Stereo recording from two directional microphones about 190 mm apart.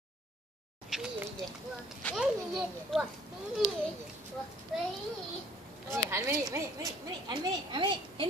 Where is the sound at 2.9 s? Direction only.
Centre (ahead or behind).